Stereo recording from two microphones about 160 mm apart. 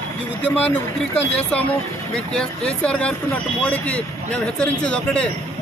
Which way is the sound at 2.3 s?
5° left (ahead or behind).